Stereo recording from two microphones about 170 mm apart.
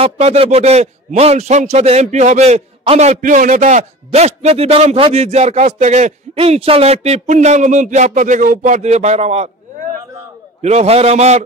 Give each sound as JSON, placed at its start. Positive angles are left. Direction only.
{"t": 0.0, "sound": "a man's voice", "side_deg": -35}
{"t": 10.6, "sound": "a man's voice", "side_deg": -40}